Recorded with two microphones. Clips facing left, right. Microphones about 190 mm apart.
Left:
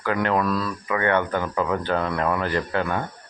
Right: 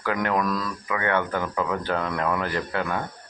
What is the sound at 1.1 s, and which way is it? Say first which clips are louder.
A man's voice: left 2 dB; 20° left (ahead or behind).